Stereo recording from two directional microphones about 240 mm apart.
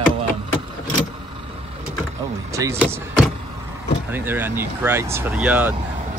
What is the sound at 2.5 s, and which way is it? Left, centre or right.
Speech, centre.